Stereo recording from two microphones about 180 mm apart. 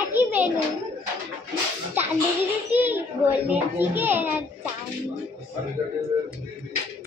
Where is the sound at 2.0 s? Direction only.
10° right (ahead or behind).